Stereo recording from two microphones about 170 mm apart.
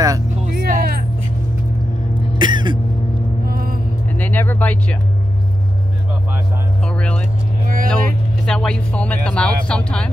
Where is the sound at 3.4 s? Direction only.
60° right (ahead or behind).